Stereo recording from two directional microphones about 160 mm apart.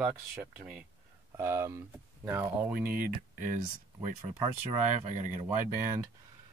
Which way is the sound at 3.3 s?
55° right (ahead or behind).